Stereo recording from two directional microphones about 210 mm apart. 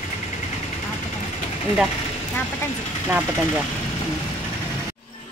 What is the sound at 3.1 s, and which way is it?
Speech, 5° right (ahead or behind).